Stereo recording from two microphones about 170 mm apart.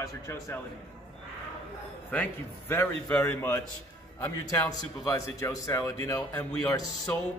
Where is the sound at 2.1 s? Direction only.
10° left (ahead or behind).